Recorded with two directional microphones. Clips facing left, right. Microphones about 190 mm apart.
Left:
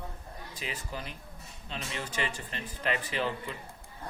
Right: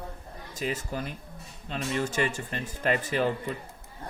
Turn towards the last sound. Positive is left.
turn(degrees=-45)  # may be behind; listen again after turning